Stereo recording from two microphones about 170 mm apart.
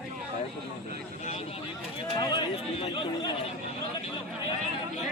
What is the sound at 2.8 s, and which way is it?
Speech, 30° left (ahead or behind).